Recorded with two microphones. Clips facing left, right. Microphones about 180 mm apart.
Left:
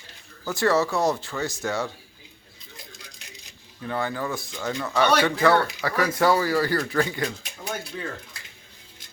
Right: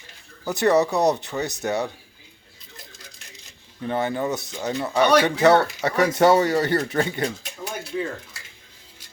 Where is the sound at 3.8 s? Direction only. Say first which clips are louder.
Right 4 dB; 25° right (ahead or behind).